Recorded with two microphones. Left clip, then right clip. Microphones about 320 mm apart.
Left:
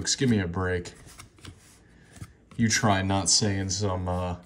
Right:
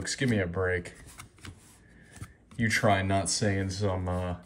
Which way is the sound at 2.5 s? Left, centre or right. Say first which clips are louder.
Left 1 dB; centre.